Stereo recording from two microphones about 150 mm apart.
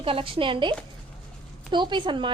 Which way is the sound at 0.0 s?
35° right (ahead or behind).